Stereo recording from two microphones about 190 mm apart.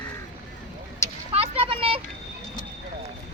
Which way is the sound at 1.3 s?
30° right (ahead or behind).